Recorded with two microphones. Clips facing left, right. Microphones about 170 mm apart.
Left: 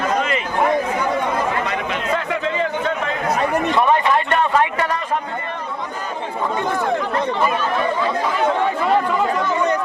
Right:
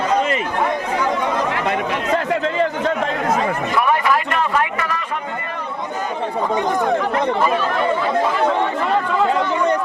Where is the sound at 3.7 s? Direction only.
25° left (ahead or behind).